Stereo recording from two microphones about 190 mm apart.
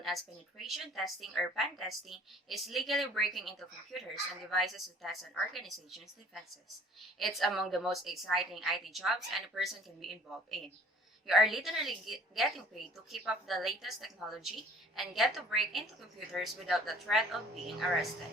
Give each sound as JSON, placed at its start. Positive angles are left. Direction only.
{"t": 0.1, "sound": "a woman's voice", "side_deg": 0}